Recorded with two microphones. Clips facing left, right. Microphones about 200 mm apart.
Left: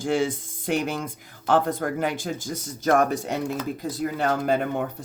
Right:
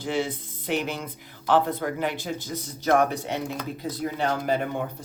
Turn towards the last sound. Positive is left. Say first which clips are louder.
# left 2 dB
turn(degrees=50)  # may be behind; listen again after turning